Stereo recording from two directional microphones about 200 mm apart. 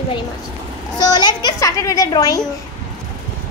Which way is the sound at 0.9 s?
20° left (ahead or behind).